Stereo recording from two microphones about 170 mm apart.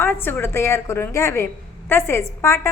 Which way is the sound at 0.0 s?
15° left (ahead or behind).